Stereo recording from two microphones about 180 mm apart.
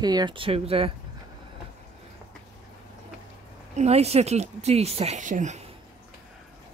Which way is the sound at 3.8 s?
35° right (ahead or behind).